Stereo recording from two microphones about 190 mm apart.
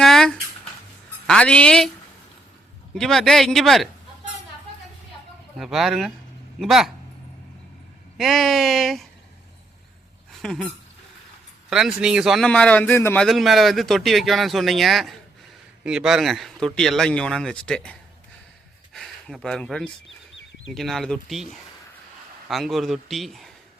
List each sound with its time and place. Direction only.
0.0 s a sound: centre (ahead or behind)
1.3 s a man's voice: 5° left (ahead or behind)
2.9 s a man's voice: centre (ahead or behind)
5.5 s a man's voice: centre (ahead or behind)
8.2 s a man's voice: centre (ahead or behind)
10.3 s squeak: 5° left (ahead or behind)
11.7 s a man's voice: 5° right (ahead or behind)
13.2 s a man's voice: centre (ahead or behind)
18.9 s a man's voice: centre (ahead or behind)